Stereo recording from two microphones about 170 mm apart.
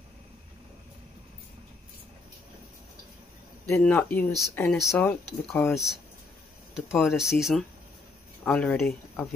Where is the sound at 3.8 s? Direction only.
10° left (ahead or behind).